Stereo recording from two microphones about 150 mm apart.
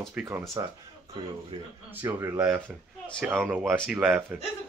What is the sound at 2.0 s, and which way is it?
Speech, 15° right (ahead or behind).